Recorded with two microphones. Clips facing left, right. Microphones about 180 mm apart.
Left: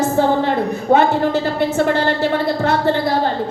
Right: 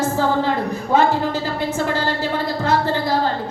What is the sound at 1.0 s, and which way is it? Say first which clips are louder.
A woman's voice: right 1 dB; 65° left (ahead or behind).